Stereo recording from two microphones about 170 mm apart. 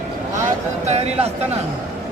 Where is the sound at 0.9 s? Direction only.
40° right (ahead or behind).